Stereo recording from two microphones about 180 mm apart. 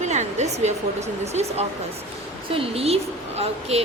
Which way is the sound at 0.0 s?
40° right (ahead or behind).